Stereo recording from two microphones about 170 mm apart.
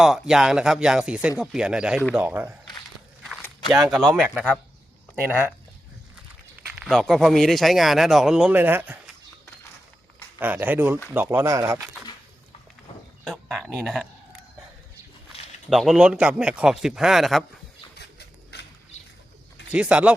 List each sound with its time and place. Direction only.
0.0 s a man's voice: 5° right (ahead or behind)
3.7 s a man's voice: centre (ahead or behind)
6.8 s a man's voice: centre (ahead or behind)
10.4 s speech: 10° right (ahead or behind)
13.2 s a man's voice: centre (ahead or behind)
15.7 s a man's voice: centre (ahead or behind)
17.9 s a sound: 80° left
19.7 s speech: 5° right (ahead or behind)